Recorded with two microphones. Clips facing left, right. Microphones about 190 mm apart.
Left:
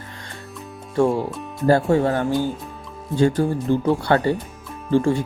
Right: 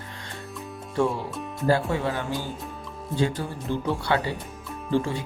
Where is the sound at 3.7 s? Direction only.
45° left (ahead or behind).